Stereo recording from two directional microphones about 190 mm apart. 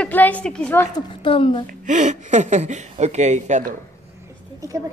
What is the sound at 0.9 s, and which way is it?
Speech, 30° left (ahead or behind).